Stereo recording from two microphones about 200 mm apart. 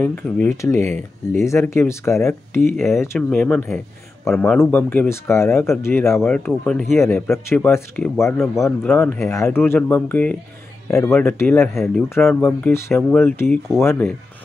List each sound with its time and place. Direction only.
0.0 s speech: 10° left (ahead or behind)
0.7 s speech: 35° right (ahead or behind)
1.4 s speech: 15° left (ahead or behind)